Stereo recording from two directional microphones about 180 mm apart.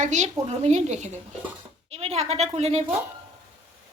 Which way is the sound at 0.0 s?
40° right (ahead or behind).